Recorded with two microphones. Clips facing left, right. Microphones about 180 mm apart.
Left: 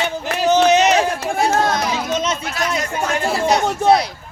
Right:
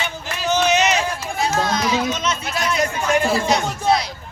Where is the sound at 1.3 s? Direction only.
55° left (ahead or behind).